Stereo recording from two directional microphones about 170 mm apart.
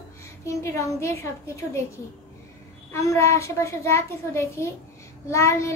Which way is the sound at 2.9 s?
15° left (ahead or behind).